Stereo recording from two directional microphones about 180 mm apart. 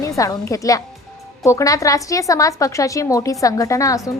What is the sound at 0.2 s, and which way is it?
A woman's voice, 20° left (ahead or behind).